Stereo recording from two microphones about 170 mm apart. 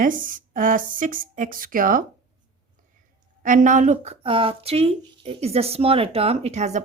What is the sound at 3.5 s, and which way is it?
Speech, 50° right (ahead or behind).